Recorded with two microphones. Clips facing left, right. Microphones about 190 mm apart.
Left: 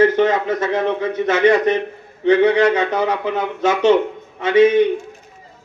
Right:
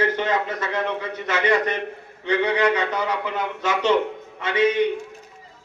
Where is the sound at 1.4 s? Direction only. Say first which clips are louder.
Left 7 dB; 25° left (ahead or behind).